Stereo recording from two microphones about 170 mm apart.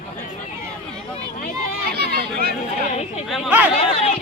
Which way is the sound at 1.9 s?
65° right (ahead or behind).